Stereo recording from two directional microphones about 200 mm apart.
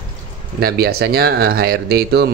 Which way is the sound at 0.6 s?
50° right (ahead or behind).